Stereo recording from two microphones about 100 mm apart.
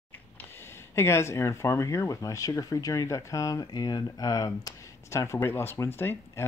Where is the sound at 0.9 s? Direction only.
25° left (ahead or behind).